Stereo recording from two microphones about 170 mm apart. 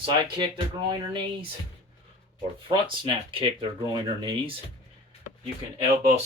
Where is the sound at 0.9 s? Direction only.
30° right (ahead or behind).